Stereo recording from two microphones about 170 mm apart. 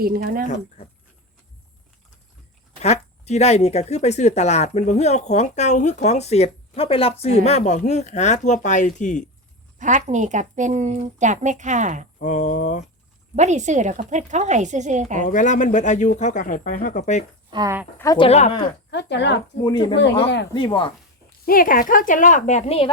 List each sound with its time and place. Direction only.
0.0 s speech: 60° right (ahead or behind)
2.8 s speech: 40° left (ahead or behind)
9.7 s a woman's voice: 45° right (ahead or behind)
12.2 s speech: 45° left (ahead or behind)
13.3 s a woman's voice: 45° right (ahead or behind)
15.3 s speech: 50° left (ahead or behind)
17.5 s speech: 20° right (ahead or behind)
17.9 s speech: 20° left (ahead or behind)
18.2 s speech: 40° left (ahead or behind)
18.9 s speech: 90° left
19.6 s speech: 25° left (ahead or behind)
21.4 s speech: 55° left (ahead or behind); by 22.9 s 35° left (ahead or behind)